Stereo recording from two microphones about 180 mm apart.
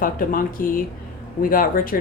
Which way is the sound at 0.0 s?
50° left (ahead or behind).